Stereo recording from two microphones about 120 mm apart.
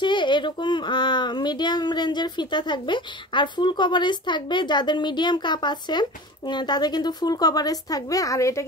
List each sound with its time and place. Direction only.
0.0 s speech: 40° left (ahead or behind); by 8.6 s 25° left (ahead or behind)